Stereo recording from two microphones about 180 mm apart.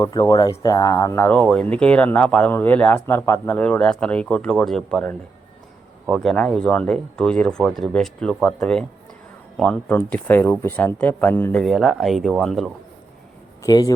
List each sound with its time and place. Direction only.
0.0 s speech: 25° left (ahead or behind)
11.6 s speech: centre (ahead or behind)
13.6 s speech: 20° left (ahead or behind)